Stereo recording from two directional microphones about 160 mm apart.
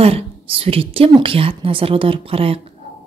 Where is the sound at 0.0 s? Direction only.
35° right (ahead or behind).